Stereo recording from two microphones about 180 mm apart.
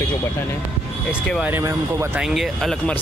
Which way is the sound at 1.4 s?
15° right (ahead or behind).